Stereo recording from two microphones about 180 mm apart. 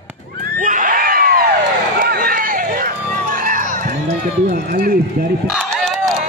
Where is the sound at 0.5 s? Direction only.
50° right (ahead or behind).